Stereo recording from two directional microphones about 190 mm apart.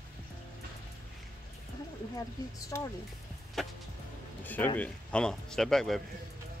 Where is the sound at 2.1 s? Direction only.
20° left (ahead or behind).